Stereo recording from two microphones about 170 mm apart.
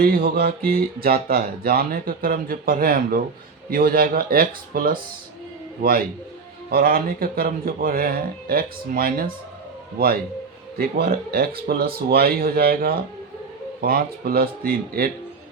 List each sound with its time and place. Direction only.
0.0 s speech: 60° right (ahead or behind)
6.7 s speech: 60° right (ahead or behind)
10.8 s speech: 65° right (ahead or behind)